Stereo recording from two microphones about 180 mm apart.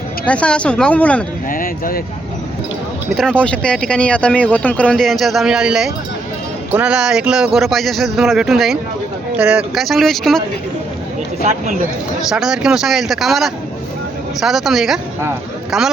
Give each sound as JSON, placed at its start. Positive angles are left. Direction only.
{"t": 0.3, "sound": "speech", "side_deg": 5}
{"t": 1.5, "sound": "a sound", "side_deg": 50}
{"t": 3.2, "sound": "speech", "side_deg": 5}
{"t": 12.3, "sound": "speech", "side_deg": -5}